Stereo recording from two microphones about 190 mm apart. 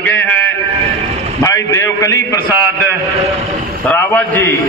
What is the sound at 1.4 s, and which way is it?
A man's voice, 15° left (ahead or behind).